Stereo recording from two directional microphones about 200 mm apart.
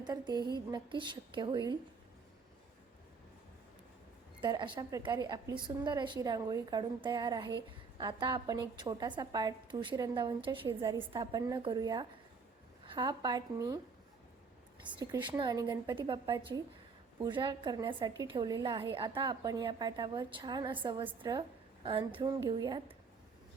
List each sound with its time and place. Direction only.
0.0 s a woman's voice: 20° right (ahead or behind)
4.4 s a woman's voice: 25° right (ahead or behind)
14.9 s a woman's voice: 15° right (ahead or behind)